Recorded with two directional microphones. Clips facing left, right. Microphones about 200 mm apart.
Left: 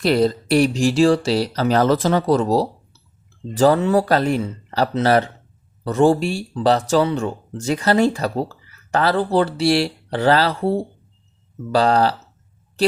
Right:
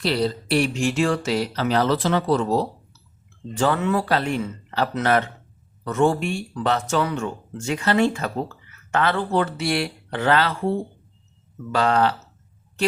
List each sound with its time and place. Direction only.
0.0 s speech: 50° left (ahead or behind)